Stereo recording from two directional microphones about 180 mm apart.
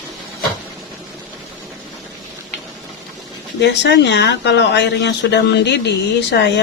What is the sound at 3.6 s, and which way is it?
Speech, 70° left (ahead or behind).